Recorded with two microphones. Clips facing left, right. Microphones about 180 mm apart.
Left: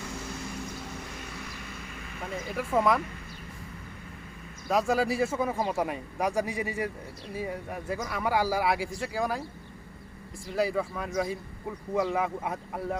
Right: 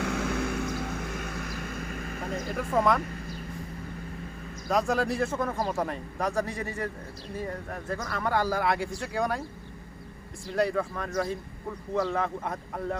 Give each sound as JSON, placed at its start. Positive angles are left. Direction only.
{"t": 0.0, "sound": "vehicle", "side_deg": -70}
{"t": 2.6, "sound": "speech", "side_deg": 5}
{"t": 4.7, "sound": "a man's voice", "side_deg": 5}